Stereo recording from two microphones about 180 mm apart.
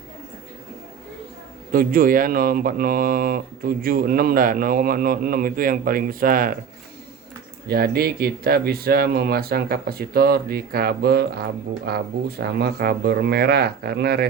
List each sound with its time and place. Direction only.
1.7 s speech: 50° right (ahead or behind)
7.7 s speech: 60° right (ahead or behind)